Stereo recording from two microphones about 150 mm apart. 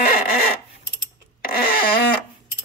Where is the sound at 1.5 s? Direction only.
80° left.